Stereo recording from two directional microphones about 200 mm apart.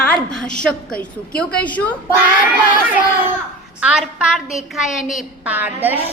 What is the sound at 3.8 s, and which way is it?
A child's voice, centre (ahead or behind).